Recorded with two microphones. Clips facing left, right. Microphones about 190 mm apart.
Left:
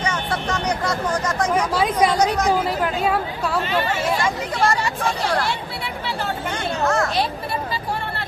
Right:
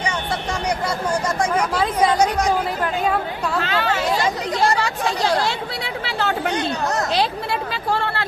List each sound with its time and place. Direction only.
1.5 s speech: 10° left (ahead or behind)
2.1 s a woman's voice: 10° right (ahead or behind)
2.5 s speech: 10° left (ahead or behind)
3.6 s speech: 90° right
5.5 s chatter: 90° right
7.7 s vehicle: 90° right